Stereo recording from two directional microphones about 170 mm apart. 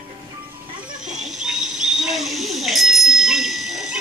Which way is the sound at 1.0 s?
Centre (ahead or behind).